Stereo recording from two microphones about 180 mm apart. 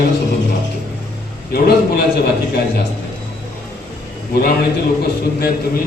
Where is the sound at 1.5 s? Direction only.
60° left (ahead or behind).